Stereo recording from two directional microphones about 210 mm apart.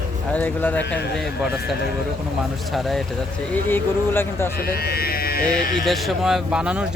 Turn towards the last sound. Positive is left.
turn(degrees=-5)  # may be behind; listen again after turning